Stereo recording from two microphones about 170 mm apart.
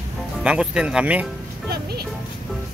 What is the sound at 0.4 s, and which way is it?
Speech, 5° right (ahead or behind).